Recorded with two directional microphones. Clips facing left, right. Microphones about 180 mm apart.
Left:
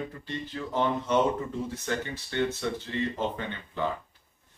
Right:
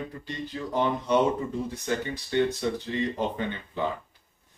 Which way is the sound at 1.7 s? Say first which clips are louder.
Right 2 dB; 15° right (ahead or behind).